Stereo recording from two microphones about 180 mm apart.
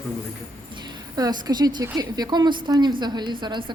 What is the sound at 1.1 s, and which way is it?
A woman's voice, 20° right (ahead or behind).